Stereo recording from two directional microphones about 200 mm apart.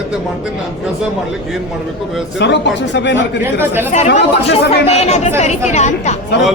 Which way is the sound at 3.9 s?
35° left (ahead or behind).